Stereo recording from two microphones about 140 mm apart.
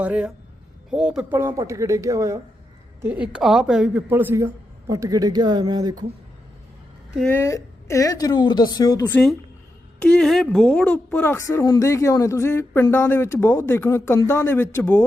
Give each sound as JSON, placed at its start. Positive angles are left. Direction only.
{"t": 0.0, "sound": "speech", "side_deg": -10}
{"t": 1.4, "sound": "speech", "side_deg": -20}
{"t": 3.0, "sound": "speech", "side_deg": -10}
{"t": 7.3, "sound": "speech", "side_deg": 20}
{"t": 10.0, "sound": "a woman's voice", "side_deg": 5}
{"t": 11.3, "sound": "a woman's voice", "side_deg": 25}